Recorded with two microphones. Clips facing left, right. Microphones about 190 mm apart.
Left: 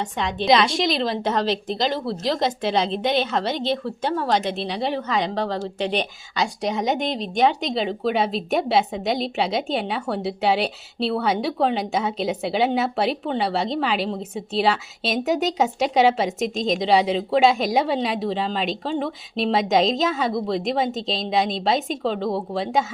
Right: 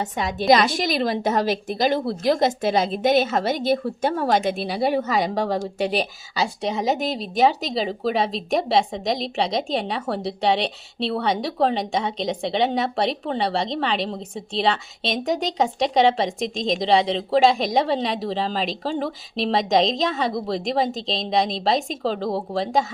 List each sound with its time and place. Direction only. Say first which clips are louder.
0.0 s speech: right 1 dB; 5° right (ahead or behind)
0.7 s speech: left 2 dB; 50° right (ahead or behind)
1.1 s a woman's voice: right 1 dB; 10° right (ahead or behind)
2.2 s speech: right 4 dB; 50° right (ahead or behind)
3.2 s a woman's voice: right 2 dB; 10° right (ahead or behind)